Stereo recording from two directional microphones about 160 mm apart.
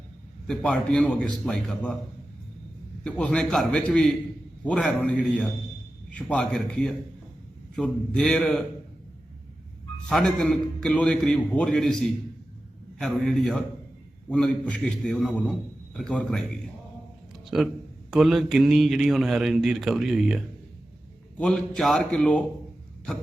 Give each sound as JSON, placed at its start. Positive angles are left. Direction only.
{"t": 0.4, "sound": "a man's voice", "side_deg": 5}
{"t": 3.0, "sound": "a man's voice", "side_deg": 5}
{"t": 10.1, "sound": "a man's voice", "side_deg": 5}
{"t": 18.1, "sound": "a man's voice", "side_deg": 0}